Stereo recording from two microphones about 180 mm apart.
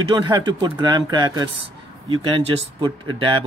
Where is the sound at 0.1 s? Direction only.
25° right (ahead or behind).